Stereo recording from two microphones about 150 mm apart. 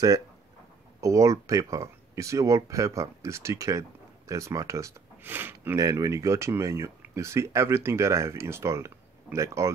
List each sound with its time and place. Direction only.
1.0 s speech: 20° right (ahead or behind)